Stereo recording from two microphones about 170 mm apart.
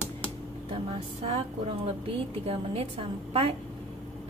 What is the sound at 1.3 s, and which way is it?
A woman's voice, 35° right (ahead or behind).